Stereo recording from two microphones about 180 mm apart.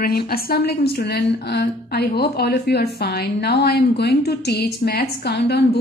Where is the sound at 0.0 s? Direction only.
60° left (ahead or behind).